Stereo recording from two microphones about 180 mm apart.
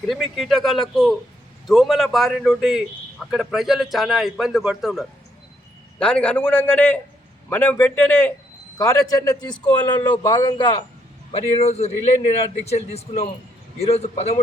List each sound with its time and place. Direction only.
0.1 s a man's voice: centre (ahead or behind); by 14.4 s 35° left (ahead or behind)